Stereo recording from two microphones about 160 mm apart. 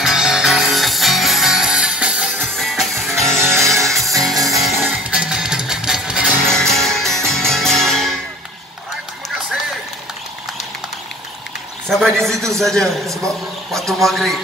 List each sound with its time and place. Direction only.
0.0 s music: 5° right (ahead or behind)
3.3 s music: 15° right (ahead or behind)
3.8 s music: centre (ahead or behind)
11.9 s a man's voice: centre (ahead or behind)